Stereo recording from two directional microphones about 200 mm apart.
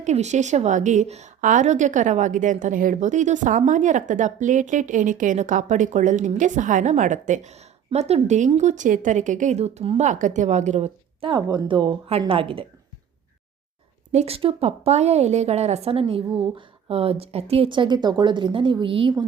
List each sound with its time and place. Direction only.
0.0 s a woman's voice: 35° right (ahead or behind)
14.1 s a woman's voice: 30° right (ahead or behind)